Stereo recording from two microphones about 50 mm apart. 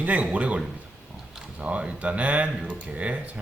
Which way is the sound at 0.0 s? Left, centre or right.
Right.